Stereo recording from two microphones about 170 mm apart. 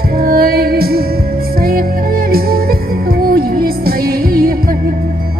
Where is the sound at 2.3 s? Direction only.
60° right (ahead or behind).